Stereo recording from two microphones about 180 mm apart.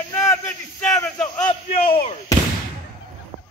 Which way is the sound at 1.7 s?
35° left (ahead or behind).